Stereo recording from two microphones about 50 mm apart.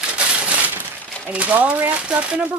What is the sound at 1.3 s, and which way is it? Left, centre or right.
Speech, right.